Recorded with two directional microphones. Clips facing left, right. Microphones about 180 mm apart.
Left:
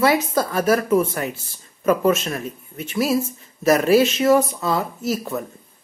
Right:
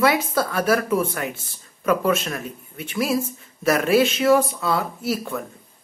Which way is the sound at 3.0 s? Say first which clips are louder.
Left 2 dB; 5° left (ahead or behind).